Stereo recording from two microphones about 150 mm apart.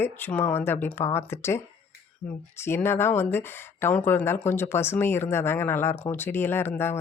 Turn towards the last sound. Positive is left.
turn(degrees=15)  # may be behind; listen again after turning